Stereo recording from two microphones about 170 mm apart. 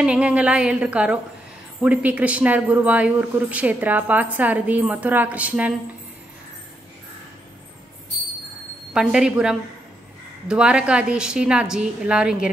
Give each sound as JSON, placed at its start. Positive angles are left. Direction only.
{"t": 0.0, "sound": "speech", "side_deg": -5}
{"t": 8.9, "sound": "a woman's voice", "side_deg": -5}